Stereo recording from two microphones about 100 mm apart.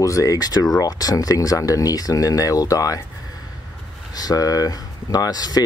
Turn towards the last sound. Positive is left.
turn(degrees=40)  # may be behind; listen again after turning